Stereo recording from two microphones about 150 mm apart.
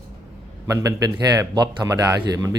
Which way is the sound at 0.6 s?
25° right (ahead or behind).